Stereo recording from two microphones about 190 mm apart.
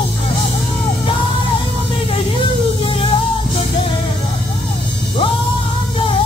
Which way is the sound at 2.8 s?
25° left (ahead or behind).